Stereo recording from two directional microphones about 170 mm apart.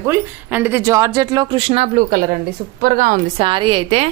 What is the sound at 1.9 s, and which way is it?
A woman's voice, 55° right (ahead or behind).